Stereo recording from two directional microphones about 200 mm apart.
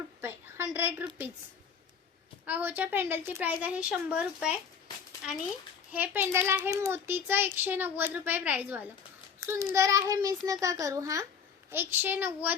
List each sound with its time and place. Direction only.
0.2 s a sound: 10° right (ahead or behind)
2.5 s a child's voice: 10° right (ahead or behind)
5.9 s a child's voice: 10° right (ahead or behind)